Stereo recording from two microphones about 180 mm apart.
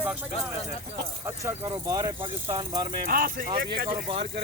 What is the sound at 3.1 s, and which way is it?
Speech, 50° right (ahead or behind).